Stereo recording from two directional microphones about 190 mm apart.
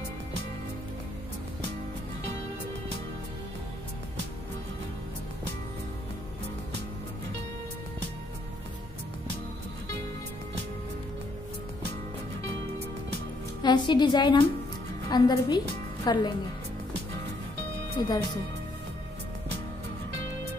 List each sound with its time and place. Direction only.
13.6 s a woman's voice: 25° left (ahead or behind)
17.9 s speech: 20° left (ahead or behind)